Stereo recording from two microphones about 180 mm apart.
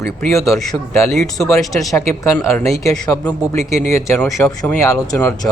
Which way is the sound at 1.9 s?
15° left (ahead or behind).